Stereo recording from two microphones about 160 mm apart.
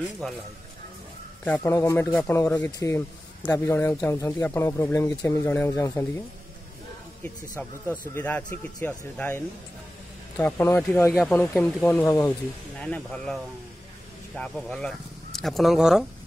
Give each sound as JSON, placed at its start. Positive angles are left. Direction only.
{"t": 0.2, "sound": "speech", "side_deg": 5}
{"t": 1.4, "sound": "speech", "side_deg": 10}
{"t": 7.6, "sound": "speech", "side_deg": 10}